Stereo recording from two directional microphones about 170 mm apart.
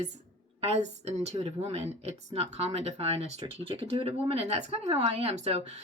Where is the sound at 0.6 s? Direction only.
40° right (ahead or behind).